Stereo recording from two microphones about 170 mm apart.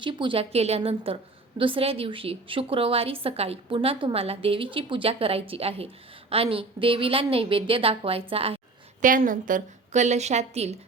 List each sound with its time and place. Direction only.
0.0 s a woman's voice: 30° right (ahead or behind)
9.0 s a woman's voice: 50° right (ahead or behind)